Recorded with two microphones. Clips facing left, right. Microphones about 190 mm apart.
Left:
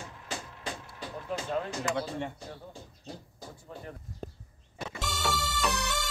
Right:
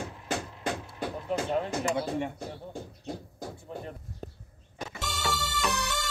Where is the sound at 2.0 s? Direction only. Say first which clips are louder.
Right 3 dB; 10° right (ahead or behind).